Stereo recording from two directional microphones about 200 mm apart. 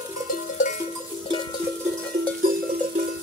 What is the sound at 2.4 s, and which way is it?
Music, 45° right (ahead or behind).